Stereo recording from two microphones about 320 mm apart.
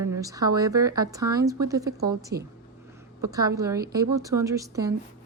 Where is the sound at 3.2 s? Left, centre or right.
Centre.